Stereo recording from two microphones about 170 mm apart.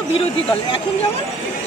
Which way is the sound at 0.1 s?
35° left (ahead or behind).